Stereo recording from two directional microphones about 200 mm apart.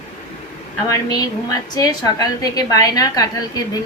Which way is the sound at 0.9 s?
15° left (ahead or behind).